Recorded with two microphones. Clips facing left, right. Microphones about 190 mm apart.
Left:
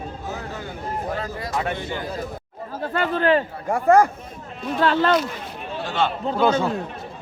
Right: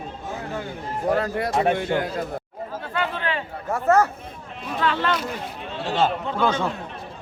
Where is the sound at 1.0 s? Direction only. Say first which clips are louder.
Right 6 dB; 60° right (ahead or behind).